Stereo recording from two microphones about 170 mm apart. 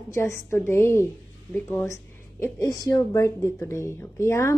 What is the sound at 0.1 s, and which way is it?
A woman's voice, 15° left (ahead or behind).